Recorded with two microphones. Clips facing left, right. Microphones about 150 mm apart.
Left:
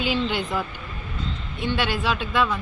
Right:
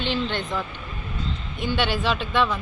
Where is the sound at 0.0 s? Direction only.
5° left (ahead or behind).